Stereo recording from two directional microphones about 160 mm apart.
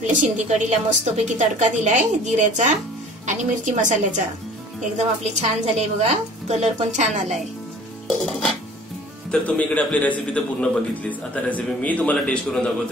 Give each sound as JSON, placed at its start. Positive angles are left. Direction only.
{"t": 0.0, "sound": "a woman's voice", "side_deg": -50}
{"t": 9.3, "sound": "a man's voice", "side_deg": 5}